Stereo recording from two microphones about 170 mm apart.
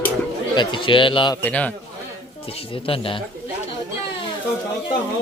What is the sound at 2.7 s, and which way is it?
Speech, 30° left (ahead or behind).